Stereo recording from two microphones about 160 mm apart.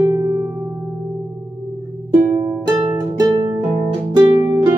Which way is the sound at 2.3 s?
20° right (ahead or behind).